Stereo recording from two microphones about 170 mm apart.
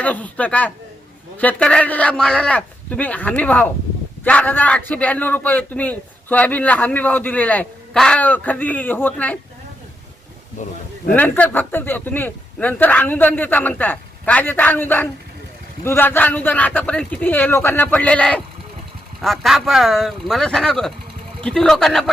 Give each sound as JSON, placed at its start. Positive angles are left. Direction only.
{"t": 0.0, "sound": "speech", "side_deg": 10}
{"t": 10.6, "sound": "speech", "side_deg": 45}
{"t": 11.1, "sound": "speech", "side_deg": 10}